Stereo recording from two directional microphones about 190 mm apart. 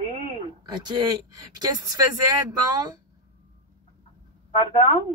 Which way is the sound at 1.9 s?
20° right (ahead or behind).